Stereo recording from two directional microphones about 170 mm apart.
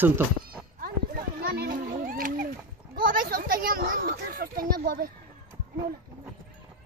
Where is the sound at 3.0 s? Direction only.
55° right (ahead or behind).